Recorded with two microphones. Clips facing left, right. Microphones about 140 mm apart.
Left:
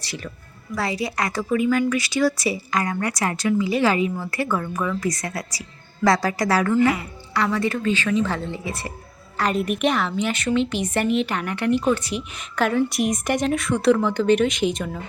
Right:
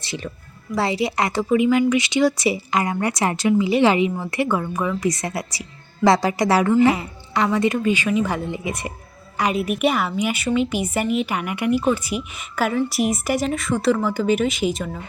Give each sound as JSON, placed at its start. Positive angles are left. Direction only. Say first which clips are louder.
{"t": 0.0, "sound": "a woman's voice", "louder": "right 3 dB", "side_deg": -20}
{"t": 9.4, "sound": "a woman's voice", "louder": "right 1 dB", "side_deg": -10}